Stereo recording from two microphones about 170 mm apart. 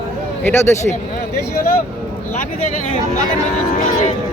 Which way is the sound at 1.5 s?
60° left (ahead or behind).